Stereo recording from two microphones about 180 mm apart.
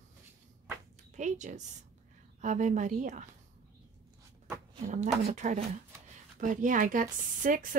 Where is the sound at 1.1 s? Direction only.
40° right (ahead or behind).